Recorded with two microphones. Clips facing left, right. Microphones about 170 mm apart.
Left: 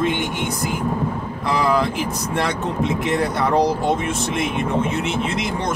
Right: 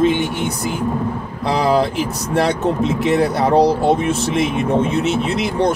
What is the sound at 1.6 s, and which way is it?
Speech, 35° right (ahead or behind).